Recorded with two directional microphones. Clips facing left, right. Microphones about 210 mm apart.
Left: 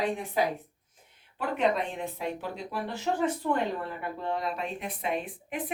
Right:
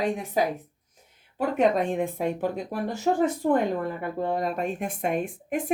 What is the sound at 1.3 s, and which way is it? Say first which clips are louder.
Speech: right 5 dB; 45° right (ahead or behind).